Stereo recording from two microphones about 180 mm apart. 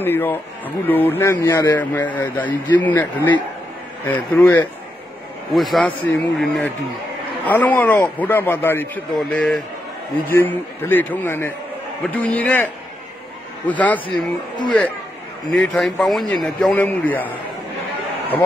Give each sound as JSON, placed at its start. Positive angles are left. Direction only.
{"t": 0.0, "sound": "speech", "side_deg": 10}
{"t": 3.0, "sound": "speech", "side_deg": 20}
{"t": 4.0, "sound": "speech", "side_deg": 10}
{"t": 5.5, "sound": "a man's voice", "side_deg": 0}
{"t": 13.7, "sound": "speech", "side_deg": 10}
{"t": 15.5, "sound": "a man's voice", "side_deg": 5}